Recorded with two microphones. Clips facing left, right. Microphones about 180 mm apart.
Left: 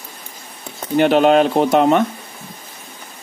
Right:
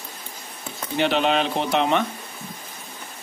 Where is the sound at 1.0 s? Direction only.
50° left (ahead or behind).